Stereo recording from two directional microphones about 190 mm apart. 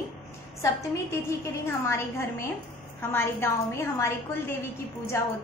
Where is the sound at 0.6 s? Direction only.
15° left (ahead or behind).